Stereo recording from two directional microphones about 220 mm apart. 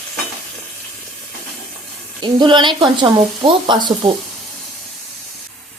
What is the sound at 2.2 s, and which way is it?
Speech, 20° right (ahead or behind).